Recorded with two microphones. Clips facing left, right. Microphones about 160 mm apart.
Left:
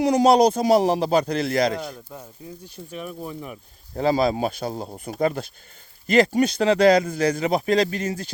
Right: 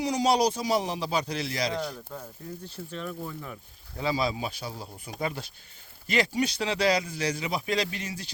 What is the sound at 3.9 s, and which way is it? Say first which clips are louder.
Speech: left 8 dB; 50° left (ahead or behind).